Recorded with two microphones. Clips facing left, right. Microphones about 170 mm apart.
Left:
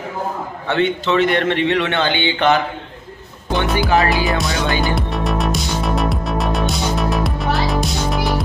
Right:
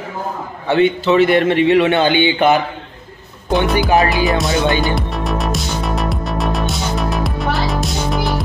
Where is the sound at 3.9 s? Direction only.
20° right (ahead or behind).